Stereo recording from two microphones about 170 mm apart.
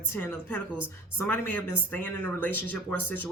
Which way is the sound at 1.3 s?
10° left (ahead or behind).